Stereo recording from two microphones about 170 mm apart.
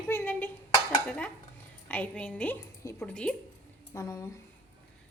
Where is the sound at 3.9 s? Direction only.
20° left (ahead or behind).